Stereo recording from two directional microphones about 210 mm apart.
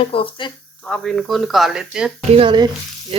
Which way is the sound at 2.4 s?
20° right (ahead or behind).